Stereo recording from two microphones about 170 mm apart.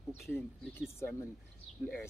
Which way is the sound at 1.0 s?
15° left (ahead or behind).